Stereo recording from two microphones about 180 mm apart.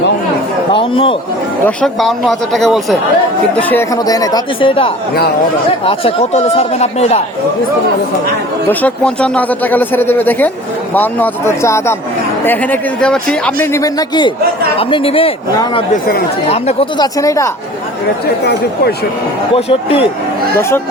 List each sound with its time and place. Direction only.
0.7 s chatter: 30° left (ahead or behind)
1.6 s a man's voice: centre (ahead or behind)
3.9 s speech: 20° left (ahead or behind); by 7.2 s 35° left (ahead or behind)
8.8 s a man's voice: 5° left (ahead or behind); by 15.3 s 30° left (ahead or behind)
17.0 s a man's voice: 20° left (ahead or behind)
19.5 s speech: 30° left (ahead or behind)
20.6 s a man's voice: 15° left (ahead or behind)